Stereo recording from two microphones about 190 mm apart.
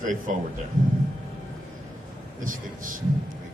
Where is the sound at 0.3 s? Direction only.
40° right (ahead or behind).